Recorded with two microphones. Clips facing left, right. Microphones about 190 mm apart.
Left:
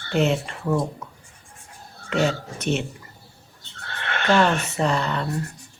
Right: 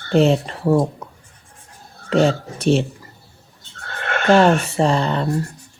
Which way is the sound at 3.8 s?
45° right (ahead or behind).